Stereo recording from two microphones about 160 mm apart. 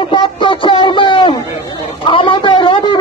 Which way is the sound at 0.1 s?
30° left (ahead or behind).